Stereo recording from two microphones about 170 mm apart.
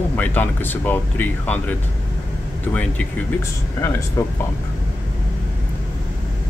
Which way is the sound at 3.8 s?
15° left (ahead or behind).